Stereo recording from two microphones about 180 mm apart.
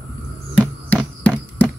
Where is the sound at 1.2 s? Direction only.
10° left (ahead or behind).